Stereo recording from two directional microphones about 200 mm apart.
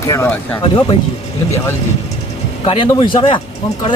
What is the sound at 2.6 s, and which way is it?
Speech, 25° left (ahead or behind).